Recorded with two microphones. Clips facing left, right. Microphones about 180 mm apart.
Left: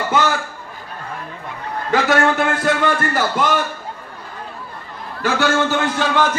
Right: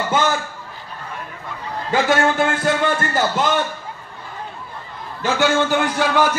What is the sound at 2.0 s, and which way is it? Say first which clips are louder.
Speech: even; 25° right (ahead or behind).